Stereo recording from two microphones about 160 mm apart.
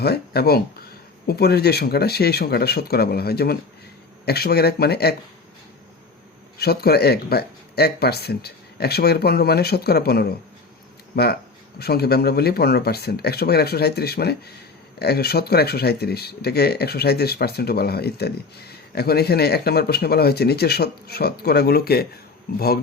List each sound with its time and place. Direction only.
0.0 s speech: 80° left
6.6 s speech: 80° left